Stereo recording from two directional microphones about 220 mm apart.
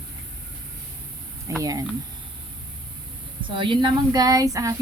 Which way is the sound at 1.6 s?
15° right (ahead or behind).